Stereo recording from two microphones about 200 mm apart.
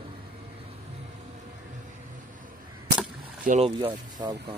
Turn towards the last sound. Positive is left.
turn(degrees=-25)  # may be behind; listen again after turning